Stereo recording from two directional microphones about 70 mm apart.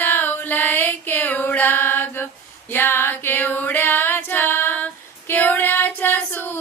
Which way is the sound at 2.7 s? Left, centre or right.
Left.